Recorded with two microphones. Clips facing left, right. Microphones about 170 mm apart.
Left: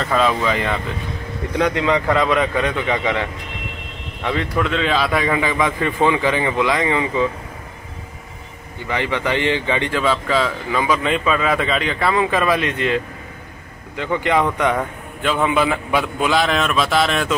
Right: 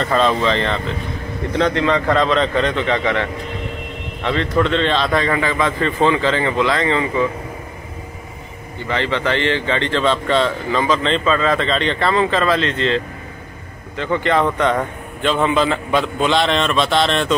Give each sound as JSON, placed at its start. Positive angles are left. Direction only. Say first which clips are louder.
{"t": 0.0, "sound": "a man's voice", "louder": "right 2 dB", "side_deg": 5}
{"t": 8.8, "sound": "a man's voice", "louder": "right 2 dB", "side_deg": 15}